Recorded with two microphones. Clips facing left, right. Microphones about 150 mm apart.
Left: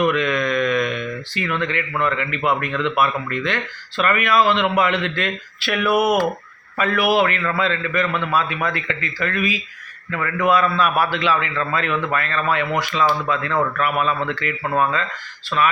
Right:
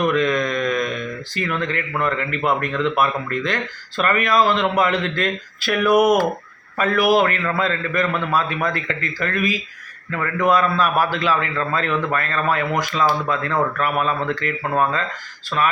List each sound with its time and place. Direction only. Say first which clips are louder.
0.1 s speech: right 1 dB; 35° right (ahead or behind)